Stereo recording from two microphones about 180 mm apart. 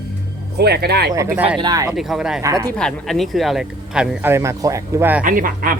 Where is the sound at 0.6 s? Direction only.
65° right (ahead or behind).